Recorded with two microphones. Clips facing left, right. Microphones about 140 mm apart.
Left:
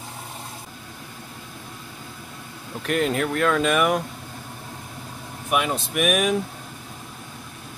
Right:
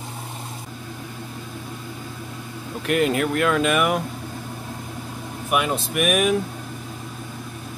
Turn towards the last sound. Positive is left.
turn(degrees=0)  # may be behind; listen again after turning